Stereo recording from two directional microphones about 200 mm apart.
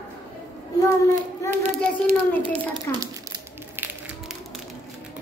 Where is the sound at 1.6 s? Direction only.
35° right (ahead or behind).